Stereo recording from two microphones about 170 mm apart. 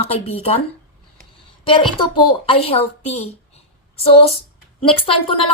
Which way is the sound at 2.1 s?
35° left (ahead or behind).